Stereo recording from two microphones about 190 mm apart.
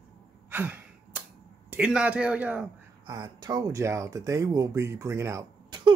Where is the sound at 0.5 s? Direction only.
10° right (ahead or behind).